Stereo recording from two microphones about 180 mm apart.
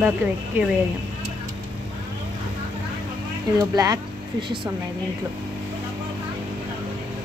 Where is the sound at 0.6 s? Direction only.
10° right (ahead or behind).